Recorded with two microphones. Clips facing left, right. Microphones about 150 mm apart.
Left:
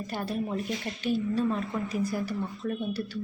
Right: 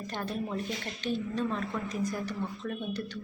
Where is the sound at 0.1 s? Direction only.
10° left (ahead or behind).